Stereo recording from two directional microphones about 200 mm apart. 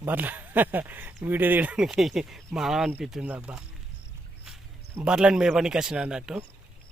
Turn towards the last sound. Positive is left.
turn(degrees=-5)  # may be behind; listen again after turning